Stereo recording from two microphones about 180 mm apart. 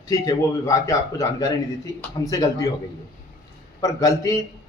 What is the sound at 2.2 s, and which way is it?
Speech, 20° left (ahead or behind).